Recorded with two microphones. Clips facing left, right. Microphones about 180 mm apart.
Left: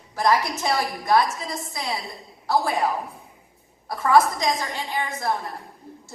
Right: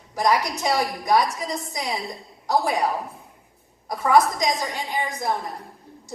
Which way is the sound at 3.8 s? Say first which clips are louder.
Even; 15° right (ahead or behind).